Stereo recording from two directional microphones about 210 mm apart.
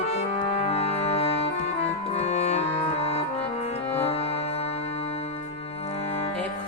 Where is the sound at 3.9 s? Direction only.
30° left (ahead or behind).